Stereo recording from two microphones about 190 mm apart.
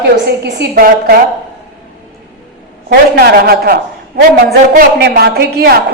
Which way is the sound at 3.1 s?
55° right (ahead or behind).